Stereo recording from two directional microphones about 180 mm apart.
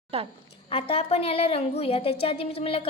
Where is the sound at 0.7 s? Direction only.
30° left (ahead or behind).